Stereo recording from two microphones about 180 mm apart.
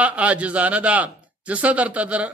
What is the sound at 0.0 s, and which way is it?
Speech, 5° right (ahead or behind).